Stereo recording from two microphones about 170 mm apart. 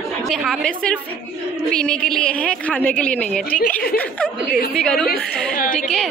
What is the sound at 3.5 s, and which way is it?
Speech, 55° left (ahead or behind).